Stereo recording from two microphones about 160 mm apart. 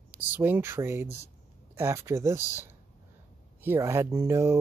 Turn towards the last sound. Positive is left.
turn(degrees=-15)  # may be behind; listen again after turning